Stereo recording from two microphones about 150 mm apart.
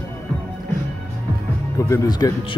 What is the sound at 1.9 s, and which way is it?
Speech, 25° left (ahead or behind).